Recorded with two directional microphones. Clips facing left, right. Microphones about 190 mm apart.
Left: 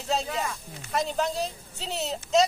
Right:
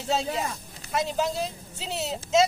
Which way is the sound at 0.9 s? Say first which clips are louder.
Right 1 dB; centre (ahead or behind).